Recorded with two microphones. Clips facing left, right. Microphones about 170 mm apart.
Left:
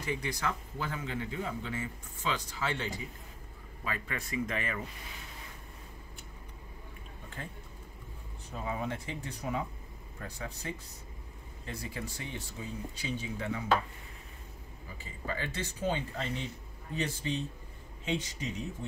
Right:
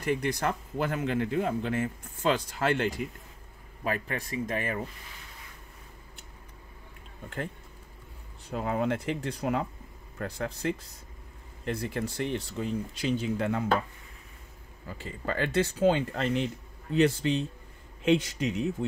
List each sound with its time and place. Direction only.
0.0 s speech: 55° right (ahead or behind)
3.8 s speech: 50° right (ahead or behind)
8.5 s speech: 70° right (ahead or behind)
11.6 s speech: 65° right (ahead or behind)
14.9 s speech: 75° right (ahead or behind)